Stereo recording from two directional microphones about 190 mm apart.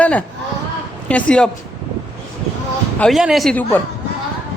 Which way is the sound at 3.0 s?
Centre (ahead or behind).